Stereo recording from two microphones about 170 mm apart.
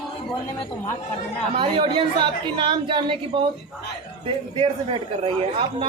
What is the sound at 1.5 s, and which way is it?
A woman's voice, 30° right (ahead or behind).